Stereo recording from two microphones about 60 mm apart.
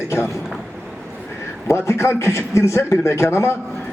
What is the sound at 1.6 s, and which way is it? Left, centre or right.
A man's voice, left.